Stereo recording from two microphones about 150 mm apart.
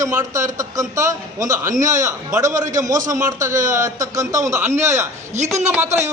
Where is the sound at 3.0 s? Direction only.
20° right (ahead or behind).